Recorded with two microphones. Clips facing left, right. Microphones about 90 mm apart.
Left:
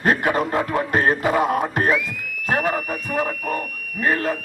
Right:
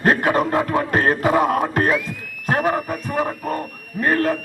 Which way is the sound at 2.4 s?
30° right (ahead or behind).